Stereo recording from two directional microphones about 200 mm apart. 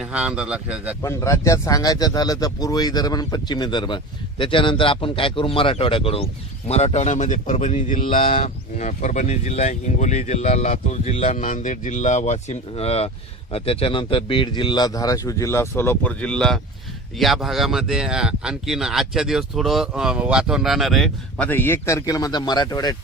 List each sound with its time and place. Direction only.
0.0 s speech: 5° right (ahead or behind)
1.0 s speech: 15° left (ahead or behind)